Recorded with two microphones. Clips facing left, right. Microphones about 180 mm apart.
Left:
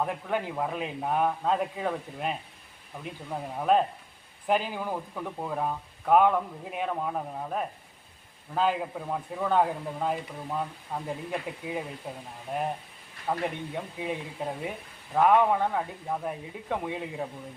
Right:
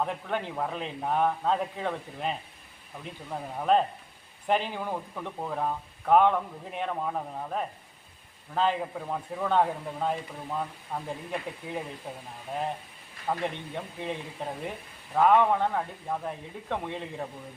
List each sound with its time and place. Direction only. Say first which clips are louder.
0.0 s speech: left 1 dB; 5° left (ahead or behind)
13.2 s speech: left 1 dB; 5° left (ahead or behind)